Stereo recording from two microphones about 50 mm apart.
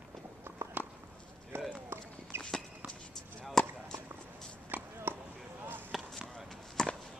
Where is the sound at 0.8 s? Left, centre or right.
Right.